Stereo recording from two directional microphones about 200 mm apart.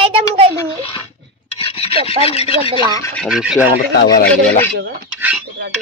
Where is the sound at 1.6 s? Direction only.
30° left (ahead or behind).